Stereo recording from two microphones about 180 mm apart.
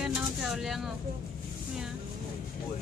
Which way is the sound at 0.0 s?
Centre (ahead or behind).